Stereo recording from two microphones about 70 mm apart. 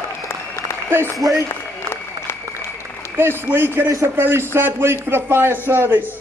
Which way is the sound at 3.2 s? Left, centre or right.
Right.